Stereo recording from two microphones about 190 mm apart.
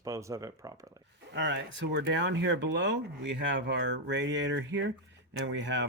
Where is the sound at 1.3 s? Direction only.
75° right (ahead or behind).